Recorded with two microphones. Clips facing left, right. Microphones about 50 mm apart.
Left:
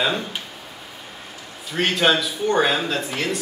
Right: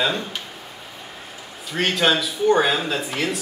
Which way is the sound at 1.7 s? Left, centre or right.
Centre.